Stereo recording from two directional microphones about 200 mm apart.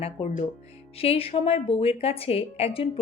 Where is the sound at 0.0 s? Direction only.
35° left (ahead or behind).